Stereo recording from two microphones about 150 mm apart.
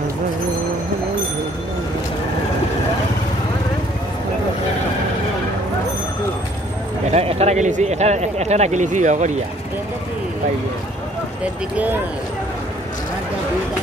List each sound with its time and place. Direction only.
7.1 s speech: 45° right (ahead or behind)
11.7 s speech: 10° right (ahead or behind)